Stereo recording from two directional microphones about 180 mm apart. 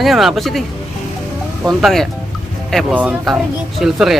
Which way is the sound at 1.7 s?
Centre (ahead or behind).